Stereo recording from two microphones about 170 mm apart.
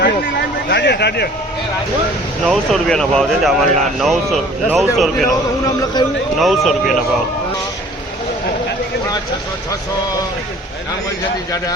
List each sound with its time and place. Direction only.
0.0 s a sound: 80° left
2.5 s speech: centre (ahead or behind)
6.0 s speech: 25° left (ahead or behind)
6.4 s speech: centre (ahead or behind)